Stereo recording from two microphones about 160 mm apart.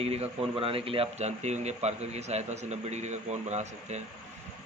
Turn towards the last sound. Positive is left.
turn(degrees=-45)  # may be behind; listen again after turning